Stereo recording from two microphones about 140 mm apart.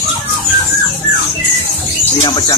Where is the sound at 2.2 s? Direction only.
30° left (ahead or behind).